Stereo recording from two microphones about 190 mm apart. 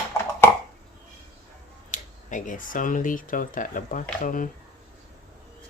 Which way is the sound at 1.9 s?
45° left (ahead or behind).